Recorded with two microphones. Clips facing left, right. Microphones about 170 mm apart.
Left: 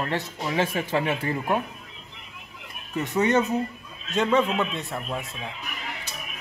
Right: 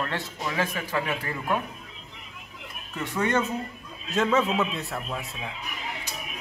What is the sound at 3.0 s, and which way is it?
Speech, 20° left (ahead or behind).